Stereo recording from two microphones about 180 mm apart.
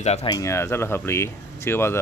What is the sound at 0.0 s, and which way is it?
Speech, 35° left (ahead or behind).